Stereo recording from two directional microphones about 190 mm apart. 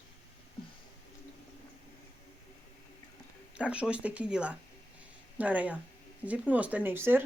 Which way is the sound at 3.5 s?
5° right (ahead or behind).